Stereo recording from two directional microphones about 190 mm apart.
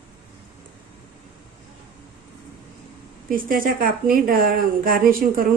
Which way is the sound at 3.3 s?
45° right (ahead or behind).